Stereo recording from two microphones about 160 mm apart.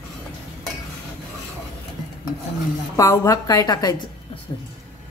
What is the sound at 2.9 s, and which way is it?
A woman's voice, 15° left (ahead or behind).